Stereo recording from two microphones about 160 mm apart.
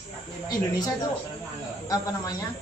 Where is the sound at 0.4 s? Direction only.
25° left (ahead or behind).